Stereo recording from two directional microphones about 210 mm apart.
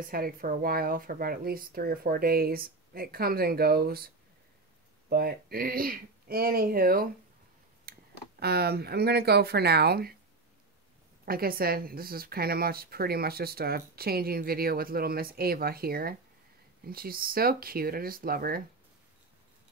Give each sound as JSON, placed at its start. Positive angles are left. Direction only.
{"t": 0.0, "sound": "speech", "side_deg": -45}
{"t": 5.1, "sound": "speech", "side_deg": -45}
{"t": 7.9, "sound": "a sound", "side_deg": -45}
{"t": 8.4, "sound": "speech", "side_deg": -50}
{"t": 11.2, "sound": "speech", "side_deg": -45}